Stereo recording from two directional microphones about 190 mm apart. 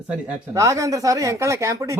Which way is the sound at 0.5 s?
15° right (ahead or behind).